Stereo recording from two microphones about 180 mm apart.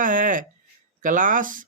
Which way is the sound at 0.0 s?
45° right (ahead or behind).